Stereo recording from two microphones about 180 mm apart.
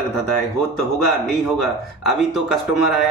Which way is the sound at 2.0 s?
Centre (ahead or behind).